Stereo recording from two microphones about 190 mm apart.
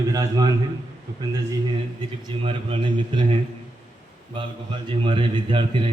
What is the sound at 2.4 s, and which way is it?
Speech, 30° right (ahead or behind).